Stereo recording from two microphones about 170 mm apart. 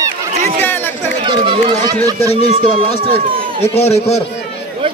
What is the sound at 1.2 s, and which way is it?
Run, 30° right (ahead or behind).